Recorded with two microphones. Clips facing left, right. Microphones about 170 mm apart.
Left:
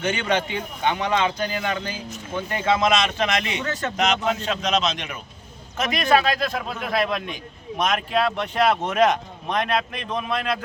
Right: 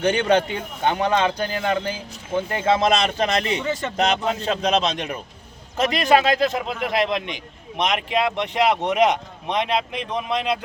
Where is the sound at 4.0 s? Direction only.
35° right (ahead or behind).